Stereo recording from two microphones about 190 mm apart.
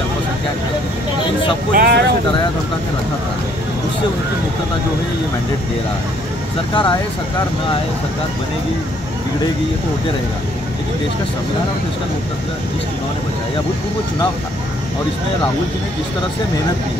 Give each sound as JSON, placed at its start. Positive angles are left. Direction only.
{"t": 1.7, "sound": "speech", "side_deg": -55}
{"t": 6.7, "sound": "speech", "side_deg": 25}